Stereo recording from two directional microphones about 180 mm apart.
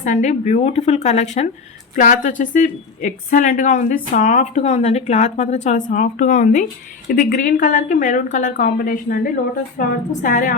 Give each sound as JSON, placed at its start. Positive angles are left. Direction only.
{"t": 0.0, "sound": "a woman's voice", "side_deg": 40}